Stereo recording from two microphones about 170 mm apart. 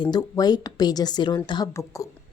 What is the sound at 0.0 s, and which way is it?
A woman's voice, 25° left (ahead or behind).